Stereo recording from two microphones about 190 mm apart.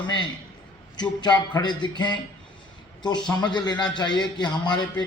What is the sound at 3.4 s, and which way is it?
A man's voice, 20° left (ahead or behind).